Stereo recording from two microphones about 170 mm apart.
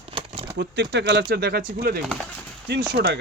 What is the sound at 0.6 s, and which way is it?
Speech, 90° right.